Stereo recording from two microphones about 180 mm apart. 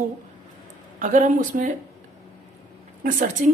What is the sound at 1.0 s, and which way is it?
Speech, 45° right (ahead or behind).